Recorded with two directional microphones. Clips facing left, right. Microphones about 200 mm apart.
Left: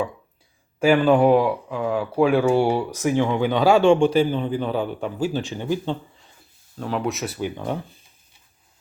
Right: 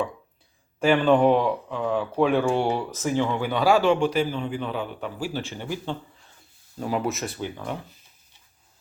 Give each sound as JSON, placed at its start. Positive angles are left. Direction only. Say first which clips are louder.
{"t": 0.8, "sound": "speech", "louder": "left 2 dB", "side_deg": 10}
{"t": 5.2, "sound": "speech", "louder": "left 6 dB", "side_deg": 15}
{"t": 6.7, "sound": "speech", "louder": "left 1 dB", "side_deg": -5}
{"t": 7.5, "sound": "speech", "louder": "left 5 dB", "side_deg": 30}